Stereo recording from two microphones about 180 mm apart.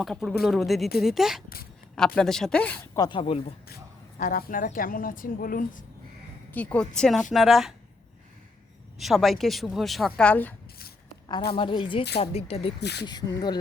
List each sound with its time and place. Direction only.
0.0 s speech: centre (ahead or behind)
2.9 s speech: 25° left (ahead or behind)
4.2 s a woman's voice: 50° left (ahead or behind)
6.5 s speech: 10° left (ahead or behind)
9.0 s speech: centre (ahead or behind)
11.5 s speech: 30° left (ahead or behind)
12.8 s speech: 70° left (ahead or behind)
13.1 s speech: 25° left (ahead or behind)